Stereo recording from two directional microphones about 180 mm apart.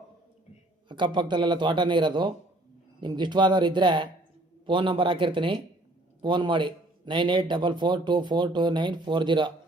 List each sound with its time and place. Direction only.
0.9 s speech: 25° right (ahead or behind)